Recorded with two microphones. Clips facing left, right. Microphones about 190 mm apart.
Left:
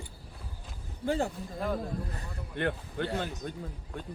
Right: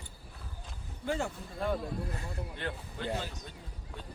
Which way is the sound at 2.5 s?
55° left (ahead or behind).